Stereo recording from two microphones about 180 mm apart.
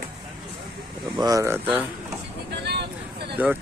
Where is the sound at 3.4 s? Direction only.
10° right (ahead or behind).